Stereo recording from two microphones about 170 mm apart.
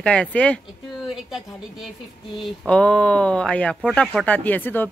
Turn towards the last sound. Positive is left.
turn(degrees=10)  # may be behind; listen again after turning